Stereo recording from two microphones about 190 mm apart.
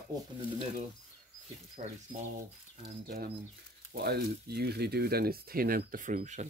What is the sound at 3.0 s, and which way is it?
Speech, 55° right (ahead or behind).